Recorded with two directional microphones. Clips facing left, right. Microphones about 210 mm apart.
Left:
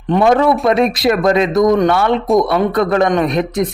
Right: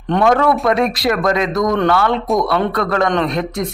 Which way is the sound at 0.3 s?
25° left (ahead or behind).